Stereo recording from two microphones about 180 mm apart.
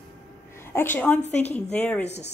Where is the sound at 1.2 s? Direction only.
40° left (ahead or behind).